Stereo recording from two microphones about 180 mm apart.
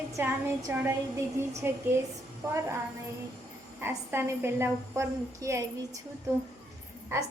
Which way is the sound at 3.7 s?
15° right (ahead or behind).